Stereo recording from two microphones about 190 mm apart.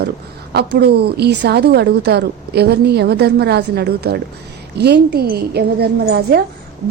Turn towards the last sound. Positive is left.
turn(degrees=-55)  # may be behind; listen again after turning